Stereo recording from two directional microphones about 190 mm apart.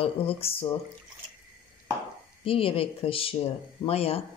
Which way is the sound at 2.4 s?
30° left (ahead or behind).